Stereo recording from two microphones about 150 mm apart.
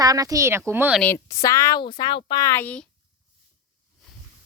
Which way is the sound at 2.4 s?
15° left (ahead or behind).